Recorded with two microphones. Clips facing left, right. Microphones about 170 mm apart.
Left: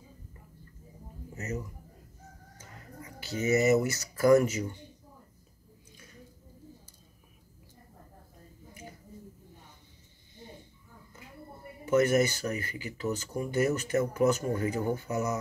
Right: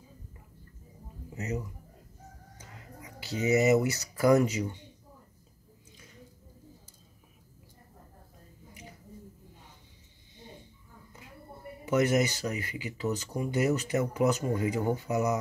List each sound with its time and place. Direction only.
1.3 s a man's voice: 15° right (ahead or behind)
11.8 s speech: 15° right (ahead or behind)